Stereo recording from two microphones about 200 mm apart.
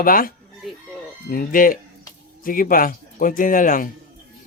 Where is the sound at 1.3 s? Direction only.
45° left (ahead or behind).